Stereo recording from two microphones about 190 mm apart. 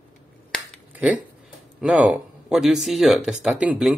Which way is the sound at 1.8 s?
5° right (ahead or behind).